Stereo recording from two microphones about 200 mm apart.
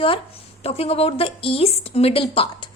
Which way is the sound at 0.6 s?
30° left (ahead or behind).